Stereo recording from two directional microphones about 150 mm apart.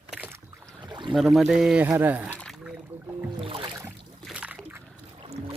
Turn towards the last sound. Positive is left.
turn(degrees=-40)  # may be behind; listen again after turning